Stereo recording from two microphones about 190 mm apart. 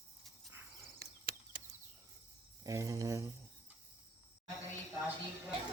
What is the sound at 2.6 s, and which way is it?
Cricket, 15° right (ahead or behind).